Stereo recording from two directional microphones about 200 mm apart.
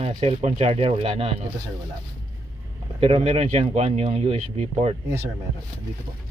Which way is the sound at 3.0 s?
30° right (ahead or behind).